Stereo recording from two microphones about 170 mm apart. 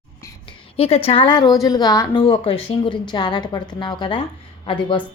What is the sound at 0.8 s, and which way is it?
A woman's voice, 35° left (ahead or behind).